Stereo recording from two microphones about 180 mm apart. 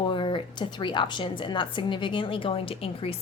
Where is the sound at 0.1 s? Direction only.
25° left (ahead or behind).